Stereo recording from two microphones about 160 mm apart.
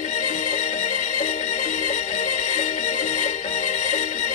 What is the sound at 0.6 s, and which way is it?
Music, 50° left (ahead or behind).